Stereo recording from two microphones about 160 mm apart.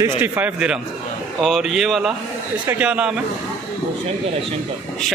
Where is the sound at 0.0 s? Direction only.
10° right (ahead or behind).